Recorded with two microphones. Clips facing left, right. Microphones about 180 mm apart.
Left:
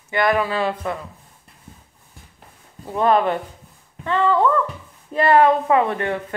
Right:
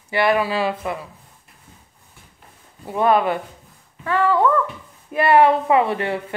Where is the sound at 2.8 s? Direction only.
10° right (ahead or behind).